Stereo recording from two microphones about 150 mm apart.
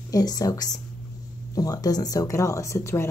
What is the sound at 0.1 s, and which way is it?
Speech, 25° left (ahead or behind).